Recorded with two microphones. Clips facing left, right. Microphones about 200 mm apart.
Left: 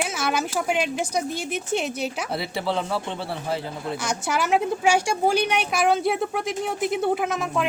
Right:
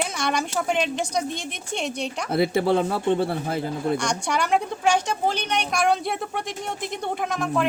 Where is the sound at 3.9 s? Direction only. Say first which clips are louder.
Right 1 dB; 5° left (ahead or behind).